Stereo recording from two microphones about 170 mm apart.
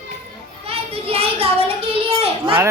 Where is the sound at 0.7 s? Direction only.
35° right (ahead or behind).